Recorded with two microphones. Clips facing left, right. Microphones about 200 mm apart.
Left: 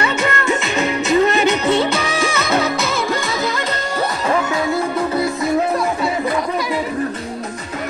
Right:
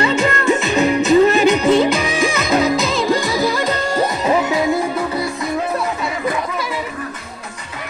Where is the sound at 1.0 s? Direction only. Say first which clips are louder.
Right 2 dB; 15° right (ahead or behind).